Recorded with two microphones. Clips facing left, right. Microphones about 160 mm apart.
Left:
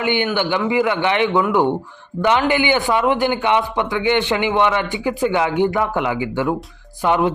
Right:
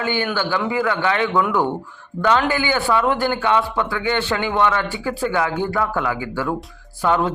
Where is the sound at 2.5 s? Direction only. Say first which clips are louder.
Left 2 dB; 20° left (ahead or behind).